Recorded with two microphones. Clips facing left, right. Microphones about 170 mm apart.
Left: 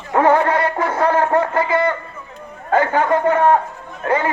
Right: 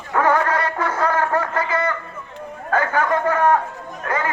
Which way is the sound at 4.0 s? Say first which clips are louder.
Left 6 dB; 25° left (ahead or behind).